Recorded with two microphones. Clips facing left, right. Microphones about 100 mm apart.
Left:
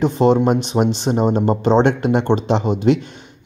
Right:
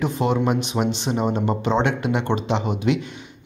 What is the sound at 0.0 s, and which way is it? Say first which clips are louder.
Speech: left 7 dB; 30° left (ahead or behind).